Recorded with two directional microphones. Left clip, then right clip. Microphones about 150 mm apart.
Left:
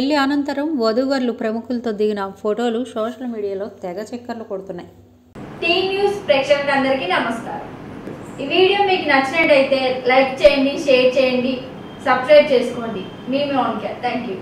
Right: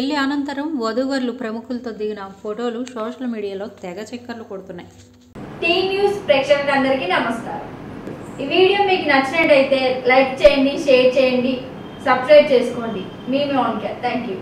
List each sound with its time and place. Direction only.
0.0 s a woman's voice: 15° left (ahead or behind)
1.9 s a woman's voice: 35° left (ahead or behind)
3.0 s a woman's voice: 5° left (ahead or behind)
5.6 s a woman's voice: centre (ahead or behind)